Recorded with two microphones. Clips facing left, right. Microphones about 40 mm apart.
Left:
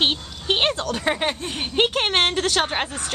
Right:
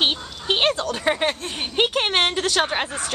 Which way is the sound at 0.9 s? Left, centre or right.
Centre.